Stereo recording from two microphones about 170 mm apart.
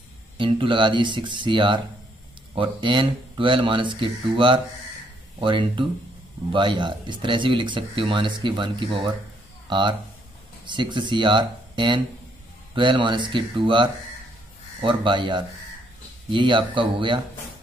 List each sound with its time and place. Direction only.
0.4 s speech: 30° right (ahead or behind)